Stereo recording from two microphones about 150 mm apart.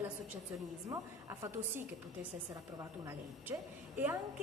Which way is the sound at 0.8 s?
20° right (ahead or behind).